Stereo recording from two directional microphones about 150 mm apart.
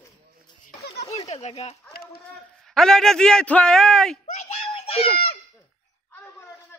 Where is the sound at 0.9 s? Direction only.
40° left (ahead or behind).